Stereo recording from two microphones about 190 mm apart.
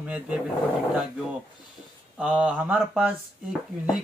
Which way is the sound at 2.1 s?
5° right (ahead or behind).